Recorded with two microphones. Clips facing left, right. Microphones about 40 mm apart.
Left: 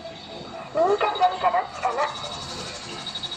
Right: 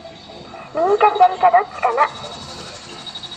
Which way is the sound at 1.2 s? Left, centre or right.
Right.